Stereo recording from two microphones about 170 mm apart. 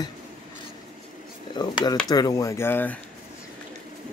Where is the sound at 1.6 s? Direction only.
25° left (ahead or behind).